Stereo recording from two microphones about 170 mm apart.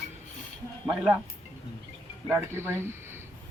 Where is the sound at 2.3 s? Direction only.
15° right (ahead or behind).